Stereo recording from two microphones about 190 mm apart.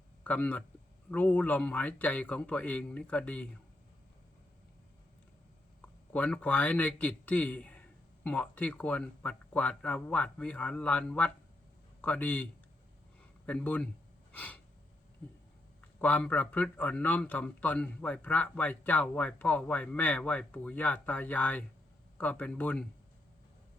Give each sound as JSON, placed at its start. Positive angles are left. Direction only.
{"t": 0.3, "sound": "a man's voice", "side_deg": 5}
{"t": 6.1, "sound": "a man's voice", "side_deg": 5}
{"t": 14.3, "sound": "gasp", "side_deg": 10}
{"t": 16.0, "sound": "a man's voice", "side_deg": 10}